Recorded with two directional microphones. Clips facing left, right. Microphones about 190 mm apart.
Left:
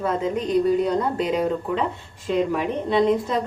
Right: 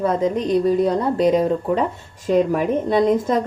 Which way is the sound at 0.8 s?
35° right (ahead or behind).